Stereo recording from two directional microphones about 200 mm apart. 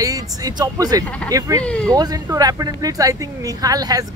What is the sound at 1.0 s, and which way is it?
Speech, 5° left (ahead or behind).